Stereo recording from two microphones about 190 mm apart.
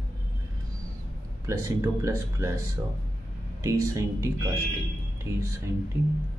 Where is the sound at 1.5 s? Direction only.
15° right (ahead or behind).